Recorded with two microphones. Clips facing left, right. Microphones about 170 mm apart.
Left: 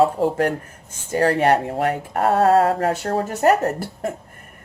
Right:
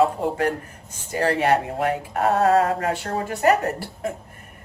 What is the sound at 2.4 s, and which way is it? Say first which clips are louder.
Speech: left 4 dB; 35° left (ahead or behind).